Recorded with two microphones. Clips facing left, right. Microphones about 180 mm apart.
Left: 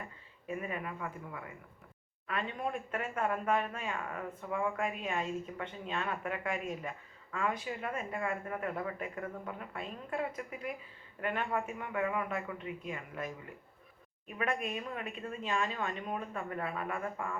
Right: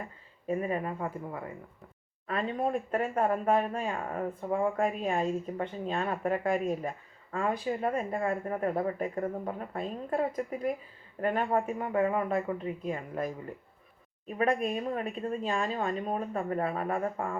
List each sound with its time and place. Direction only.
0.4 s speech: 35° right (ahead or behind)